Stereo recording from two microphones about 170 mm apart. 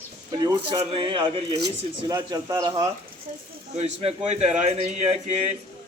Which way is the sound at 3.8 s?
40° right (ahead or behind).